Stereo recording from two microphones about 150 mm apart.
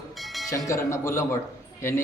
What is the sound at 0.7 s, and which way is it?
Speech, 20° left (ahead or behind).